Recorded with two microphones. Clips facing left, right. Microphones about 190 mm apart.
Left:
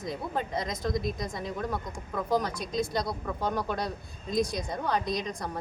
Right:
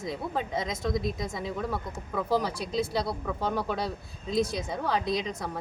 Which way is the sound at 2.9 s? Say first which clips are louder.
Right 1 dB; 5° right (ahead or behind).